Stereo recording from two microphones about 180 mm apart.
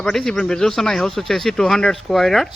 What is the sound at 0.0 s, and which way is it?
Speech, 5° left (ahead or behind).